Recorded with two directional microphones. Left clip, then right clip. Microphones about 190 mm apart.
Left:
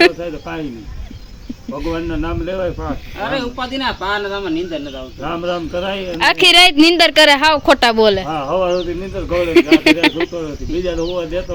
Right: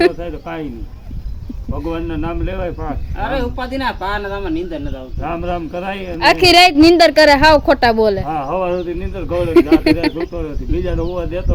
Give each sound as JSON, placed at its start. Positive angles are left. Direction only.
{"t": 0.0, "sound": "speech", "side_deg": -5}
{"t": 1.7, "sound": "speech", "side_deg": -5}
{"t": 3.2, "sound": "speech", "side_deg": -25}
{"t": 5.2, "sound": "speech", "side_deg": -5}